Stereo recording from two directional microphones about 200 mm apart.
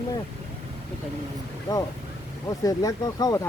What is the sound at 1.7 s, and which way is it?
Speech, 20° left (ahead or behind).